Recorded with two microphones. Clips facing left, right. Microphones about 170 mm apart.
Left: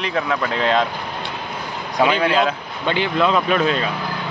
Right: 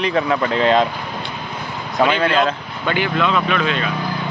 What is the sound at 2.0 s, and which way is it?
Speech, 10° left (ahead or behind).